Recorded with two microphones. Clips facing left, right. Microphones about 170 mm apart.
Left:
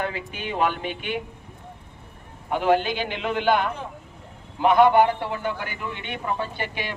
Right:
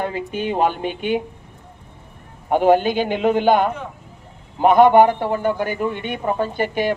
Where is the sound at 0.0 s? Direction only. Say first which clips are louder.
Right 6 dB; 45° right (ahead or behind).